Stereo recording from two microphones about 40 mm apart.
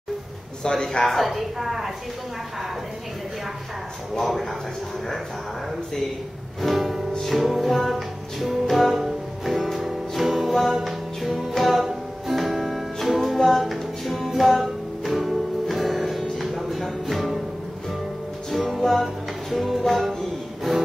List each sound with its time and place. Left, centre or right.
0.7 s speech: centre
1.0 s a woman's voice: centre
4.1 s a woman's voice: centre
6.6 s a woman's voice: centre
7.2 s music: centre
18.5 s music: centre